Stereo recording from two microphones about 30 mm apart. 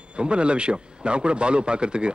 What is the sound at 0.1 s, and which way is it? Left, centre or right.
A man's voice, right.